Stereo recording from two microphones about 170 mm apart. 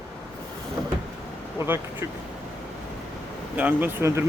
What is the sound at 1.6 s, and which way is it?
Speech, 15° right (ahead or behind).